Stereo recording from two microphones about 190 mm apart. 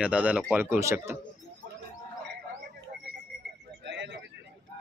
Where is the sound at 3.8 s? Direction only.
65° right (ahead or behind).